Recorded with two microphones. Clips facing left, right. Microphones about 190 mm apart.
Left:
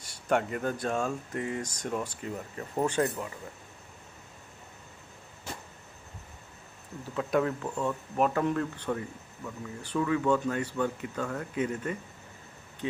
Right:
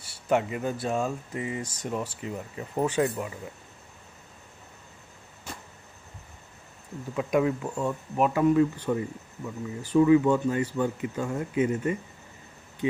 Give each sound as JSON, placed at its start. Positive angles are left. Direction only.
{"t": 0.0, "sound": "speech", "side_deg": -5}
{"t": 7.2, "sound": "speech", "side_deg": -15}
{"t": 10.0, "sound": "speech", "side_deg": -10}